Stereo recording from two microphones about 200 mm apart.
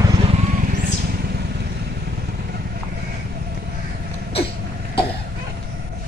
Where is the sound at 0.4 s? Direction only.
40° right (ahead or behind).